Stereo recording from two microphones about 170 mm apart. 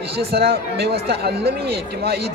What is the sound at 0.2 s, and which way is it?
A man's voice, 70° right (ahead or behind).